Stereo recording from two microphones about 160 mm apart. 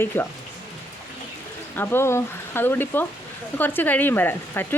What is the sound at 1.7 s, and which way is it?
A woman's voice, 15° left (ahead or behind).